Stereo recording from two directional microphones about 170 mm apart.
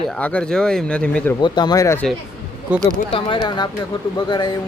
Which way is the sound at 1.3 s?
25° left (ahead or behind).